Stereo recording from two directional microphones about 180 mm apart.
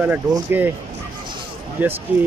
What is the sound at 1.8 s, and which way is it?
Speech, 10° right (ahead or behind).